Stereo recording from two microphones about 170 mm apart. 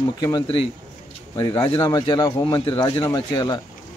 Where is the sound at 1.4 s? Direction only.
30° left (ahead or behind).